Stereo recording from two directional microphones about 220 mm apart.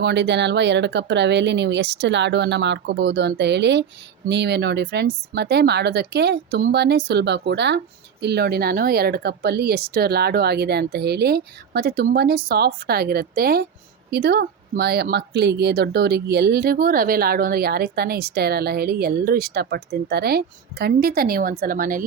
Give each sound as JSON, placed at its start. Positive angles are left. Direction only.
{"t": 0.0, "sound": "speech", "side_deg": -50}